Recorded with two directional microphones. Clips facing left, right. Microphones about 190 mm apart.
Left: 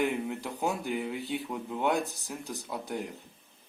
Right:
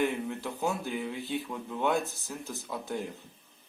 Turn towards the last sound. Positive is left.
turn(degrees=15)  # may be behind; listen again after turning